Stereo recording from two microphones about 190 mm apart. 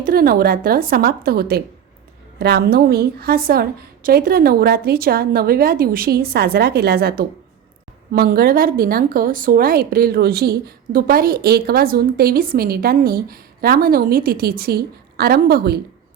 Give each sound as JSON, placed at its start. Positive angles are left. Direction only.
{"t": 0.0, "sound": "a woman's voice", "side_deg": -50}